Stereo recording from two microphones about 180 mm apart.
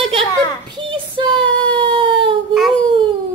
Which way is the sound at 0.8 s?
25° right (ahead or behind).